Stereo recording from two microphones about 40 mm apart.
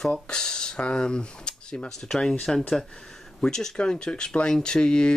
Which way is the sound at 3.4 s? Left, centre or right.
Centre.